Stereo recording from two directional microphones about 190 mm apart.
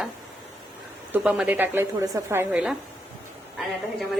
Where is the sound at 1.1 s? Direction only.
10° right (ahead or behind).